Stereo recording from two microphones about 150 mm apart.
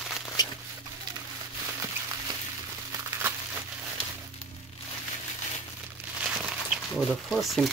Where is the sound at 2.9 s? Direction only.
20° right (ahead or behind).